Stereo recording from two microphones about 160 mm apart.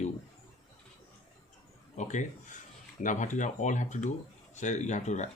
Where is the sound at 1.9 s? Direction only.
50° left (ahead or behind).